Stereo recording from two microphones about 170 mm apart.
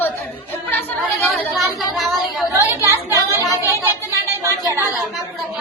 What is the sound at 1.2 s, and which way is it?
Speech, centre (ahead or behind).